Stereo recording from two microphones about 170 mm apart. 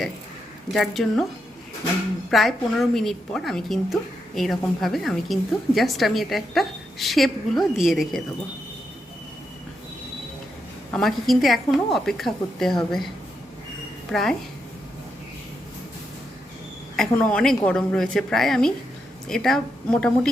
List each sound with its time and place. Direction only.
0.7 s a woman's voice: centre (ahead or behind)
2.3 s a woman's voice: centre (ahead or behind)
10.9 s a woman's voice: centre (ahead or behind)
14.1 s a woman's voice: 5° left (ahead or behind)
17.0 s a woman's voice: 5° left (ahead or behind)